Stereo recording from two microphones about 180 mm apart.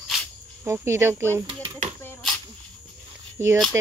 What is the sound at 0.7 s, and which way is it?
Speech, 15° right (ahead or behind).